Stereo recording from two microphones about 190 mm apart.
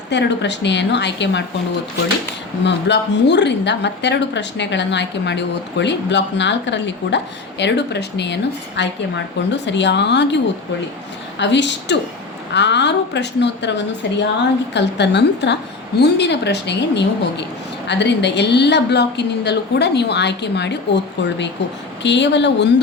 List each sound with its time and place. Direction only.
0.1 s a woman's voice: 65° left (ahead or behind)
2.6 s a woman's voice: 65° left (ahead or behind)